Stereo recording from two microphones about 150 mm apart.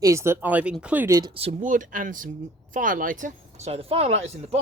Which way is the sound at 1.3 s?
40° right (ahead or behind).